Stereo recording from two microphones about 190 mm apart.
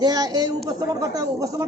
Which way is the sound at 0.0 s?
20° right (ahead or behind).